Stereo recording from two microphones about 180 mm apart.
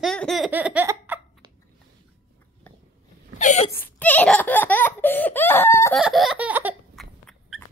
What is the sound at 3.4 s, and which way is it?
Speech, 40° left (ahead or behind).